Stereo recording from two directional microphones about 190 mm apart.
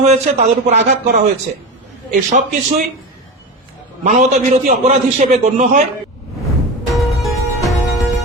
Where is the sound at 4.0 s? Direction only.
45° right (ahead or behind).